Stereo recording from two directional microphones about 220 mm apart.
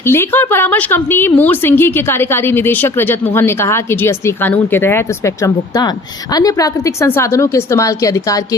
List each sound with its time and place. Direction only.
0.0 s speech: 10° left (ahead or behind)